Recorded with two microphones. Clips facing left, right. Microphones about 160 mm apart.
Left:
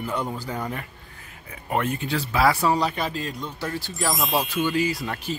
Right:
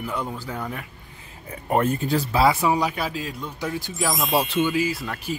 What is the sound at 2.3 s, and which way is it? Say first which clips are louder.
Speech: even; 20° right (ahead or behind).